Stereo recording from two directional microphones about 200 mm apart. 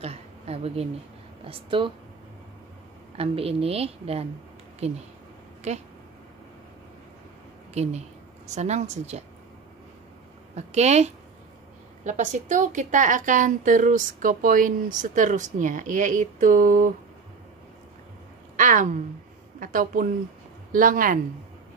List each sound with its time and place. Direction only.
0.0 s a woman's voice: 30° right (ahead or behind)
3.2 s a woman's voice: 30° right (ahead or behind)
7.7 s a woman's voice: 35° right (ahead or behind)
10.5 s a woman's voice: 35° right (ahead or behind)
18.6 s a woman's voice: 40° right (ahead or behind)